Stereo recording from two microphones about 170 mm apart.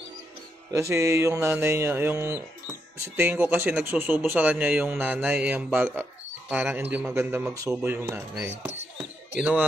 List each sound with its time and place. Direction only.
0.7 s a man's voice: 15° right (ahead or behind)